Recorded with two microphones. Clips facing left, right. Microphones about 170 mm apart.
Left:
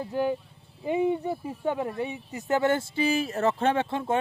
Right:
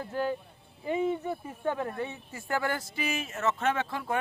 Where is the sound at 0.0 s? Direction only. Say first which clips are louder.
Left 4 dB; 15° left (ahead or behind).